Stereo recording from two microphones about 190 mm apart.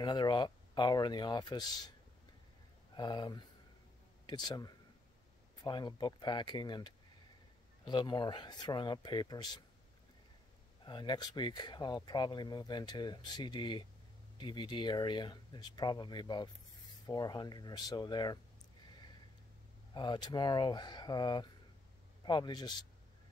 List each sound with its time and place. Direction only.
0.0 s speech: 20° left (ahead or behind)
3.0 s speech: 20° left (ahead or behind)
10.9 s speech: 25° left (ahead or behind)
19.9 s speech: 25° left (ahead or behind)